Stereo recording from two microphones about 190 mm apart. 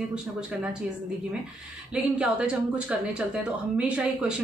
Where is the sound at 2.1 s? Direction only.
5° right (ahead or behind).